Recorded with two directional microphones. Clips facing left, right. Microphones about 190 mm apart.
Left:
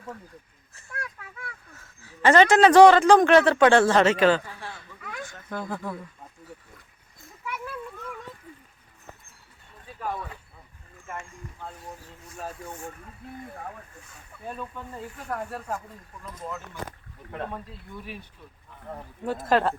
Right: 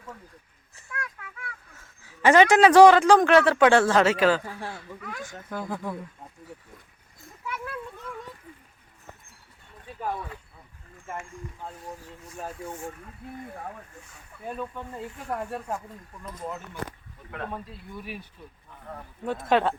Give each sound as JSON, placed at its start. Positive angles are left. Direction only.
{"t": 2.2, "sound": "speech", "side_deg": -10}
{"t": 7.4, "sound": "children playing", "side_deg": 0}
{"t": 14.4, "sound": "speech", "side_deg": -15}
{"t": 19.2, "sound": "speech", "side_deg": 5}